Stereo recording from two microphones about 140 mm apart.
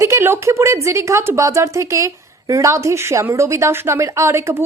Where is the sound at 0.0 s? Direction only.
20° right (ahead or behind).